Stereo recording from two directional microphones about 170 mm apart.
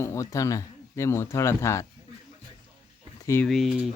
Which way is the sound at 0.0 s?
15° left (ahead or behind).